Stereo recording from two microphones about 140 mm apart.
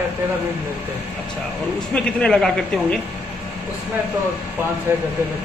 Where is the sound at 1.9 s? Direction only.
5° left (ahead or behind).